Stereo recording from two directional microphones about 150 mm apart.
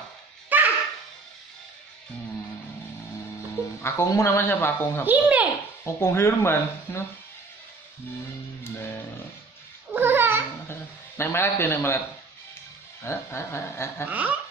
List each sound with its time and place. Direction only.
0.5 s a sound: 10° right (ahead or behind)
3.8 s speech: 20° left (ahead or behind)
5.0 s a child's voice: 10° right (ahead or behind)
5.9 s speech: 20° left (ahead or behind)
9.9 s a sound: 15° right (ahead or behind)
10.7 s a man's voice: 15° left (ahead or behind)
13.0 s speech: 20° left (ahead or behind)
14.0 s a child's voice: 10° right (ahead or behind)